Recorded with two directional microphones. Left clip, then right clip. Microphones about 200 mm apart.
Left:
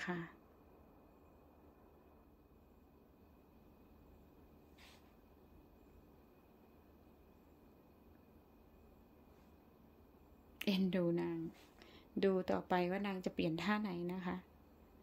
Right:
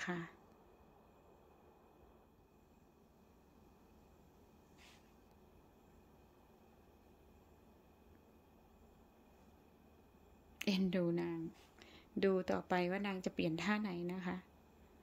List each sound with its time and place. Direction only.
0.0 s speech: centre (ahead or behind)
10.6 s speech: centre (ahead or behind)